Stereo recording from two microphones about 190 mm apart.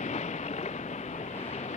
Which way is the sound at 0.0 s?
40° left (ahead or behind).